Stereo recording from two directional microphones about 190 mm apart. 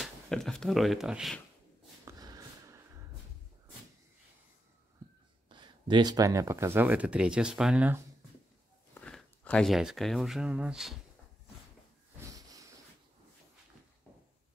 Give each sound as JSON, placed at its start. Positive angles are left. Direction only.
{"t": 0.0, "sound": "speech", "side_deg": 5}
{"t": 2.0, "sound": "snort", "side_deg": -20}
{"t": 5.5, "sound": "speech", "side_deg": -25}
{"t": 9.0, "sound": "speech", "side_deg": 5}
{"t": 12.4, "sound": "a sound", "side_deg": -20}